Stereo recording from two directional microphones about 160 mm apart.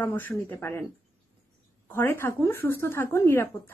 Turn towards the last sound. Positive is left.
turn(degrees=15)  # may be behind; listen again after turning